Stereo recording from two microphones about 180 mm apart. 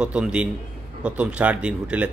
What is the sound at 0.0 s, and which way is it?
A man's voice, 5° right (ahead or behind).